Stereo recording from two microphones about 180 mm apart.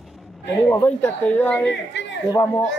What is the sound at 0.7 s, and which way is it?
A man's voice, 10° left (ahead or behind).